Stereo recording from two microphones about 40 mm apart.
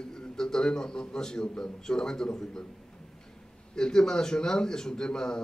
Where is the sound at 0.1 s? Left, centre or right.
Centre.